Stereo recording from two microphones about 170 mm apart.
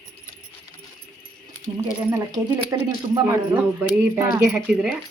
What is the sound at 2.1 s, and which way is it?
Speech, 25° right (ahead or behind).